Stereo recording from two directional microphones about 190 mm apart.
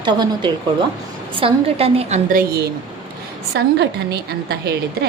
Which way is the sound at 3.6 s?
60° right (ahead or behind).